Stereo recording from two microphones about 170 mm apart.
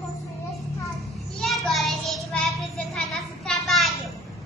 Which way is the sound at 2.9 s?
Centre (ahead or behind).